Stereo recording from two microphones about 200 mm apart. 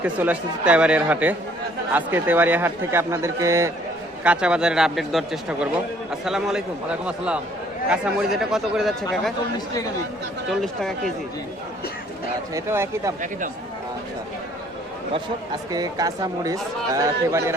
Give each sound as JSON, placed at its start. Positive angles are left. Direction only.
{"t": 0.0, "sound": "a man's voice", "side_deg": -5}
{"t": 7.9, "sound": "a man's voice", "side_deg": -5}
{"t": 10.5, "sound": "a man's voice", "side_deg": 0}
{"t": 12.5, "sound": "a man's voice", "side_deg": -10}
{"t": 15.7, "sound": "a man's voice", "side_deg": -20}